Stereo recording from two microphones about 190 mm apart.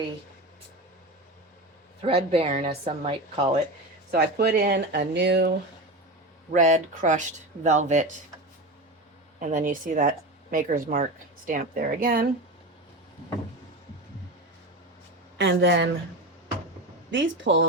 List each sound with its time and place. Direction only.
2.0 s speech: 30° right (ahead or behind)
4.1 s speech: 55° right (ahead or behind)
6.5 s speech: 40° right (ahead or behind)
9.4 s speech: 40° right (ahead or behind)
15.4 s a woman's voice: 65° right (ahead or behind)
17.1 s a woman's voice: 75° right (ahead or behind)